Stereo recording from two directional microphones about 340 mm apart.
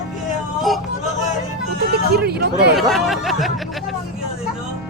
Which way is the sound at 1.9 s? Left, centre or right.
Right.